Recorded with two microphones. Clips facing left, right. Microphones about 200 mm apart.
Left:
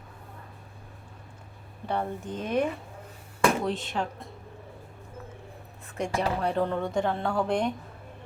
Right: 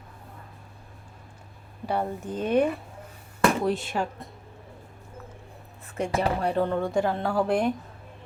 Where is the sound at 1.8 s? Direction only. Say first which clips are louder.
Right 2 dB; 10° right (ahead or behind).